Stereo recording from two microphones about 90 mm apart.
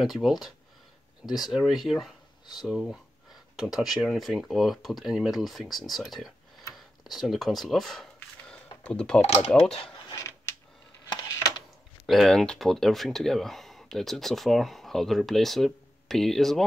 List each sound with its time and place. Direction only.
0.0 s speech: centre (ahead or behind)
10.1 s a sound: 35° left (ahead or behind)
11.1 s coin: 55° left (ahead or behind)
12.1 s speech: 5° left (ahead or behind)